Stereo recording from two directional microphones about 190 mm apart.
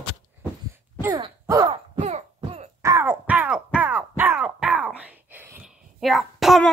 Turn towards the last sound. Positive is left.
turn(degrees=0)  # may be behind; listen again after turning